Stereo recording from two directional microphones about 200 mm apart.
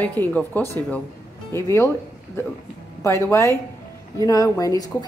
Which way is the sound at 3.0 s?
15° left (ahead or behind).